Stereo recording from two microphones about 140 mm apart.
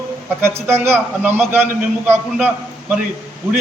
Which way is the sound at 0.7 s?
15° right (ahead or behind).